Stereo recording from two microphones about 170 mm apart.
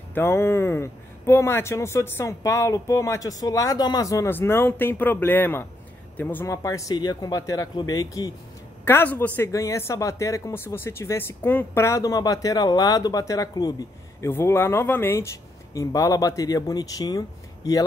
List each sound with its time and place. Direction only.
0.1 s speech: 15° left (ahead or behind)